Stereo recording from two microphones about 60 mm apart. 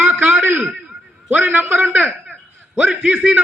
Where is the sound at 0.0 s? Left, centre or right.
Right.